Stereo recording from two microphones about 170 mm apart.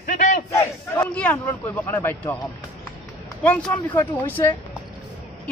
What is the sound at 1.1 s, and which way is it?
A man's voice, 10° left (ahead or behind).